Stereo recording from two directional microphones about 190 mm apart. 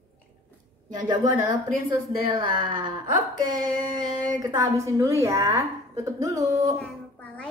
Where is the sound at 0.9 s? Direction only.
20° right (ahead or behind).